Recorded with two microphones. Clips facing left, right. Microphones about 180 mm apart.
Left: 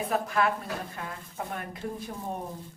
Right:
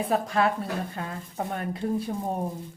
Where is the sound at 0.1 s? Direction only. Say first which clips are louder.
Right 2 dB; 30° right (ahead or behind).